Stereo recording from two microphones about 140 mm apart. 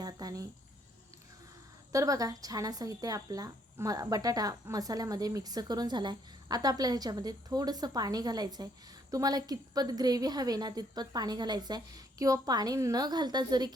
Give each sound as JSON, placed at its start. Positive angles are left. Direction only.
{"t": 0.0, "sound": "cricket", "side_deg": -25}
{"t": 1.9, "sound": "speech", "side_deg": -25}